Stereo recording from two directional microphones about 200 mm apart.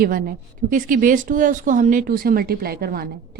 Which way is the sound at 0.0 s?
45° right (ahead or behind).